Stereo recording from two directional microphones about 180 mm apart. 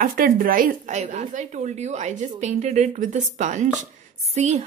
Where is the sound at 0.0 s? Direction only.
50° right (ahead or behind).